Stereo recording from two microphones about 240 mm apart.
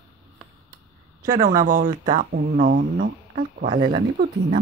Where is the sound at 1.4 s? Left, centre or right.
Right.